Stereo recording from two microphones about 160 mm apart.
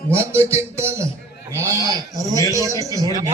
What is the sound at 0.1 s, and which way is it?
Speech, 15° right (ahead or behind).